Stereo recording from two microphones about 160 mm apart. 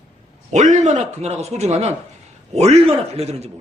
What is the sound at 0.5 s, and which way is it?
A man's voice, 50° right (ahead or behind).